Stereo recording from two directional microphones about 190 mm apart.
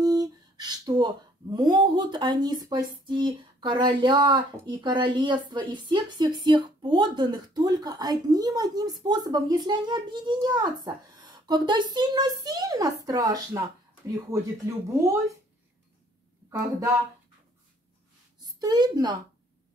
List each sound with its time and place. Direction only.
0.0 s speech: 20° right (ahead or behind)
14.9 s speech: 15° right (ahead or behind)
16.4 s speech: 15° right (ahead or behind)
18.4 s a woman's voice: 20° right (ahead or behind)